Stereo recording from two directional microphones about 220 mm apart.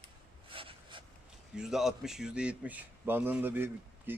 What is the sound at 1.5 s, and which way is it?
A man's voice, centre (ahead or behind).